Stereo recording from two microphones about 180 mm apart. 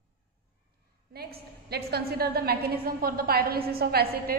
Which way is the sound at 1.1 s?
60° right (ahead or behind).